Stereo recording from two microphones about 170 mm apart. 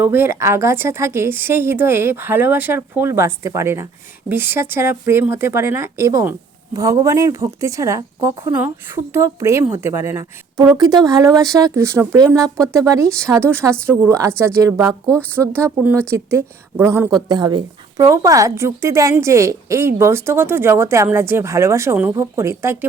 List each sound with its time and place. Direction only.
0.0 s speech: 10° right (ahead or behind)
11.3 s speech: centre (ahead or behind)
11.6 s speech: 15° right (ahead or behind)
15.0 s speech: 10° left (ahead or behind)
15.5 s speech: 10° right (ahead or behind)
17.2 s speech: 25° right (ahead or behind)